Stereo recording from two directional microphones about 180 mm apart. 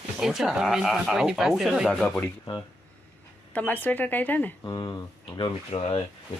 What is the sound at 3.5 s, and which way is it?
Speech, 10° left (ahead or behind).